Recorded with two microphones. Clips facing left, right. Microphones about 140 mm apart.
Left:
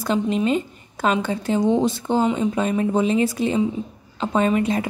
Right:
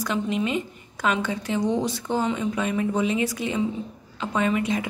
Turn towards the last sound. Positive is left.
turn(degrees=35)  # may be behind; listen again after turning